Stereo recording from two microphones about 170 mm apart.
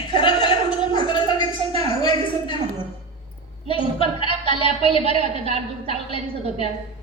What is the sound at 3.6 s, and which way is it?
A woman's voice, 35° left (ahead or behind).